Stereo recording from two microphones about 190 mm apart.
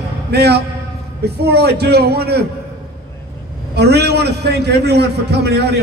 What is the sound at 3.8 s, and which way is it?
A man's voice, 60° right (ahead or behind).